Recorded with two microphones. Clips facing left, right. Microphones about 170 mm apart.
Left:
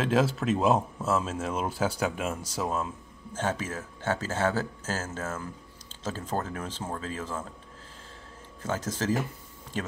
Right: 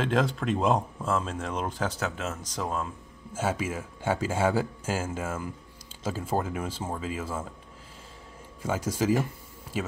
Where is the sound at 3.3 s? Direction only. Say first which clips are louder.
Right 2 dB; 10° right (ahead or behind).